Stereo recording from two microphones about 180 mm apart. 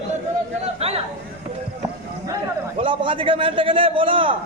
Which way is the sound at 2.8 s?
30° right (ahead or behind).